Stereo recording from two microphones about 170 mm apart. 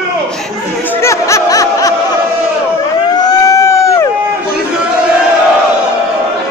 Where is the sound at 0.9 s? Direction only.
15° left (ahead or behind).